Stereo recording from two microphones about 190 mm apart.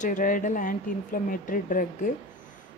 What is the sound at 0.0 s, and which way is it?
Speech, 45° left (ahead or behind).